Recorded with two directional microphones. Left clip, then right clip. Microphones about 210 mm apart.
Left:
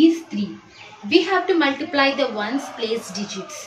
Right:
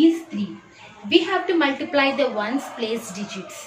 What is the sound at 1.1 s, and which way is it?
A woman's voice, 10° right (ahead or behind).